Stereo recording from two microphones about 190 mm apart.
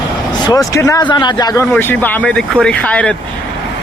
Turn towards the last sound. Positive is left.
turn(degrees=5)  # may be behind; listen again after turning